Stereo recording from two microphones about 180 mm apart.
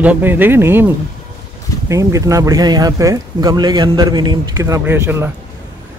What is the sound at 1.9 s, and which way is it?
Speech, 20° right (ahead or behind).